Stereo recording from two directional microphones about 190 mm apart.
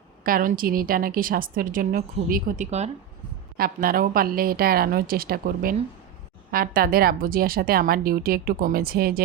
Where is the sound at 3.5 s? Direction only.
50° right (ahead or behind).